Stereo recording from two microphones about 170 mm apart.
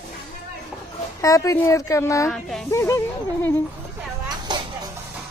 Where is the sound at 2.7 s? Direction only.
15° left (ahead or behind).